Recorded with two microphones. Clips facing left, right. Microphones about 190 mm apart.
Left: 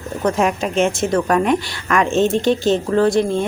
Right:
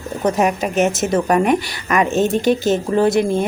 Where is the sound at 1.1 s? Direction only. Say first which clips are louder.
Right 1 dB; 15° right (ahead or behind).